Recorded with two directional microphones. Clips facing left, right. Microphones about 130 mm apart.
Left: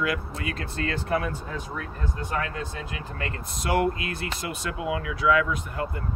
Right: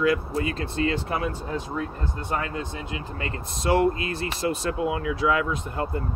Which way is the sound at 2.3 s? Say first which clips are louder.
Right 2 dB; 25° right (ahead or behind).